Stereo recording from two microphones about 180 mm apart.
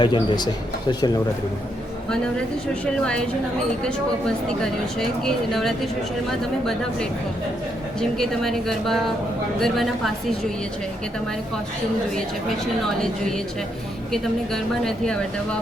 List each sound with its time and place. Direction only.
0.0 s speech: 25° left (ahead or behind)
2.8 s speech: 5° left (ahead or behind)
4.4 s speech: 5° left (ahead or behind)
7.9 s speech: centre (ahead or behind)
13.0 s speech: 5° left (ahead or behind)